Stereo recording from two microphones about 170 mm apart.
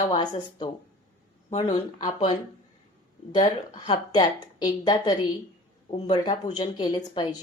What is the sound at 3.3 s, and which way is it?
Speech, 30° left (ahead or behind).